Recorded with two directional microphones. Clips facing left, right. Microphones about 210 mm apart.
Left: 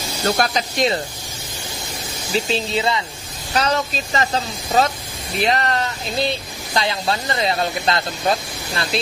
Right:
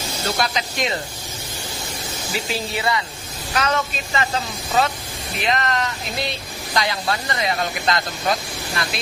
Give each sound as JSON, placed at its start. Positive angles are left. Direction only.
{"t": 0.4, "sound": "speech", "side_deg": 40}
{"t": 2.3, "sound": "speech", "side_deg": 25}
{"t": 3.5, "sound": "speech", "side_deg": 35}
{"t": 5.4, "sound": "speech", "side_deg": 35}